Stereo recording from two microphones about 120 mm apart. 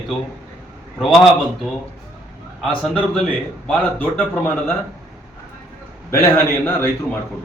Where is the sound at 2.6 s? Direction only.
5° left (ahead or behind).